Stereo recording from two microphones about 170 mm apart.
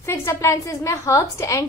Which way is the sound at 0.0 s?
15° left (ahead or behind).